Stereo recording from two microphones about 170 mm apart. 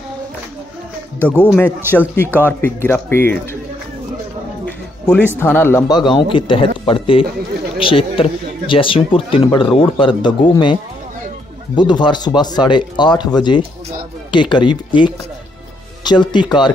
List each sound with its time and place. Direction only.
1.8 s speech: 10° right (ahead or behind)
2.1 s speech: 10° left (ahead or behind)
4.6 s music: 10° left (ahead or behind)
5.4 s a man's voice: 15° left (ahead or behind)